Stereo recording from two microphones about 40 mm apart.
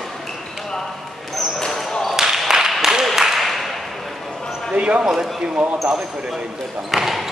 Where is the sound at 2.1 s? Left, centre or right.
Centre.